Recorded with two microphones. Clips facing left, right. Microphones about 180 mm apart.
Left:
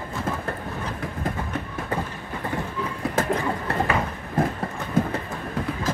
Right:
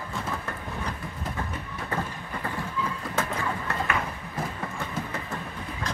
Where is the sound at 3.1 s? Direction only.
35° left (ahead or behind).